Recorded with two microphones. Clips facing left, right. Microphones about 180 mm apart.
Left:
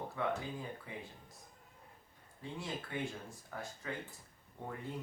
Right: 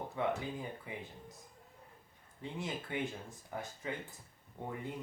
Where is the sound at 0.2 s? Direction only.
20° right (ahead or behind).